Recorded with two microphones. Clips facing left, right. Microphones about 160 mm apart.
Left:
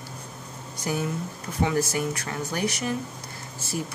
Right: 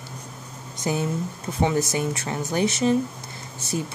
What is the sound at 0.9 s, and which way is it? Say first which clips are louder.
Speech: right 3 dB; 25° right (ahead or behind).